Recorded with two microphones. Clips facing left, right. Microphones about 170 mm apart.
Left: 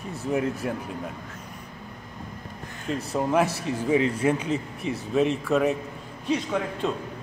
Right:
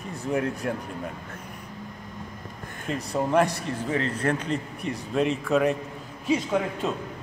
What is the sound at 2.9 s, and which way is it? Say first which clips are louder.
A man's voice: even; centre (ahead or behind).